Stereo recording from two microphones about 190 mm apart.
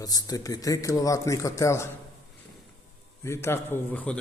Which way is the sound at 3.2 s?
15° left (ahead or behind).